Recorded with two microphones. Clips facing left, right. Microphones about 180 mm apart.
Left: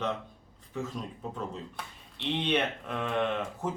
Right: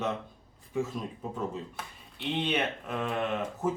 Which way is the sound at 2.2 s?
5° right (ahead or behind).